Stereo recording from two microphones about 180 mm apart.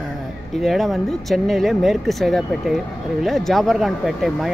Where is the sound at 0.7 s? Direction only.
Centre (ahead or behind).